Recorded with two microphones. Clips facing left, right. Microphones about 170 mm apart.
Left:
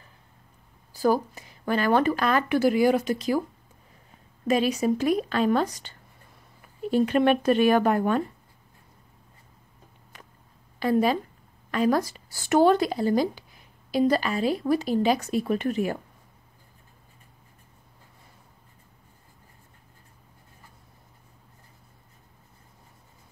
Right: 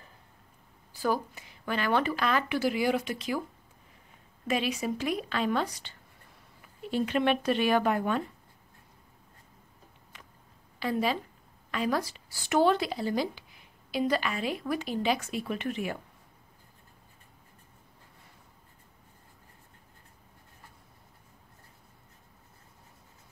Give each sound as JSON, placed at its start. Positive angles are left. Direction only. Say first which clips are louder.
{"t": 0.9, "sound": "speech", "louder": "left 6 dB", "side_deg": 40}
{"t": 4.5, "sound": "speech", "louder": "left 7 dB", "side_deg": 40}
{"t": 10.8, "sound": "speech", "louder": "left 7 dB", "side_deg": 45}